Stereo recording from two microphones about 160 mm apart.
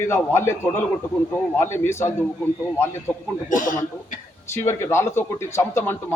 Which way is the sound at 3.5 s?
55° left (ahead or behind).